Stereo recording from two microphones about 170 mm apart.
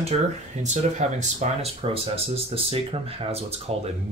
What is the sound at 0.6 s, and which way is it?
Speech, 45° right (ahead or behind).